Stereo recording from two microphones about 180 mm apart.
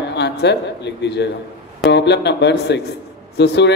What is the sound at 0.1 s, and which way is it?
A man's voice, 75° left (ahead or behind).